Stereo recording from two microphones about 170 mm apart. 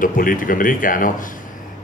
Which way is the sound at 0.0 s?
55° left (ahead or behind).